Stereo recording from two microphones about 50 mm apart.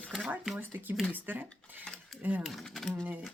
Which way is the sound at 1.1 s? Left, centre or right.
Right.